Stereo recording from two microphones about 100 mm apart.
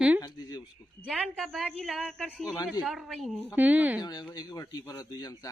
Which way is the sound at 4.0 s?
40° left (ahead or behind).